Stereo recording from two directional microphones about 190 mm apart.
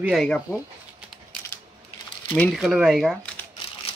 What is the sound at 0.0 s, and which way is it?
Speech, centre (ahead or behind).